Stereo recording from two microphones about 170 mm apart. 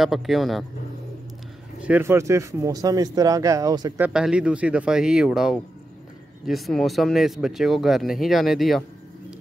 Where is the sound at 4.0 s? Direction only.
5° right (ahead or behind).